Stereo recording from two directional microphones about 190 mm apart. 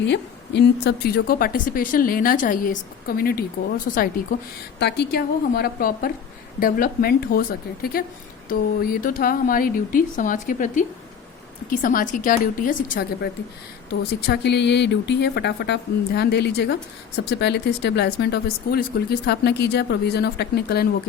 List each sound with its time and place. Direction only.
0.0 s a woman's voice: 65° left (ahead or behind); by 4.4 s 45° left (ahead or behind)
4.8 s a woman's voice: 60° left (ahead or behind)